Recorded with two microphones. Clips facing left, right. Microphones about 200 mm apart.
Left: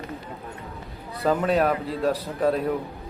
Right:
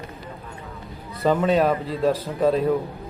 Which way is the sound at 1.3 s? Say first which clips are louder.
Right 2 dB; centre (ahead or behind).